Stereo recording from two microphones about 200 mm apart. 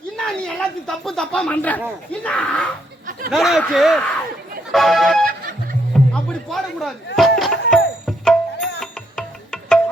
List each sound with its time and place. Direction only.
0.2 s speech: 5° left (ahead or behind)
3.1 s snicker: 45° right (ahead or behind)
3.3 s speech: centre (ahead or behind)
7.2 s music: centre (ahead or behind)